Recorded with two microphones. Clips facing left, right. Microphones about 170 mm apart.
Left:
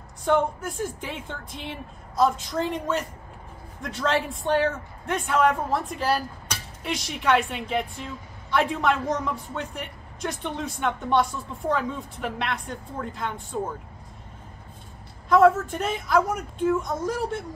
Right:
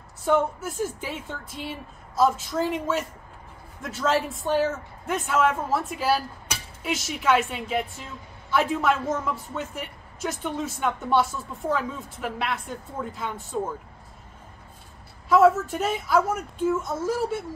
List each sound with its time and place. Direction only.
0.2 s a man's voice: 5° right (ahead or behind)
15.2 s a man's voice: 5° right (ahead or behind)